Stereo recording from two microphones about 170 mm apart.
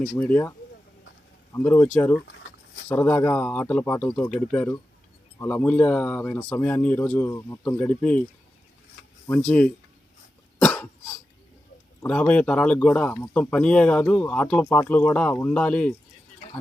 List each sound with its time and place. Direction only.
0.0 s speech: 10° left (ahead or behind)
1.5 s speech: 10° left (ahead or behind)
9.4 s speech: 5° left (ahead or behind)
10.6 s cough: 5° left (ahead or behind)
12.0 s speech: 10° left (ahead or behind)